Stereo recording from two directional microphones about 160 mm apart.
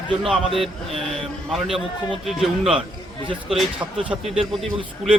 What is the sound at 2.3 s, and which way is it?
A man's voice, centre (ahead or behind).